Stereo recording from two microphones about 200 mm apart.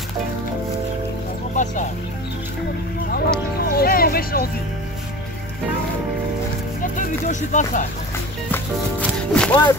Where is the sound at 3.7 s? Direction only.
50° left (ahead or behind).